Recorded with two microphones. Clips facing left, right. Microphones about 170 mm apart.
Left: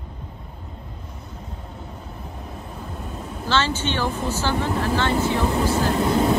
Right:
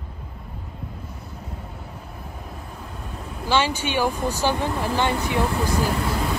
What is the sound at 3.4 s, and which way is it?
Speech, 15° right (ahead or behind).